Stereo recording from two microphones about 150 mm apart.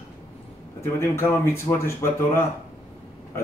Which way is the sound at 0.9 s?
15° left (ahead or behind).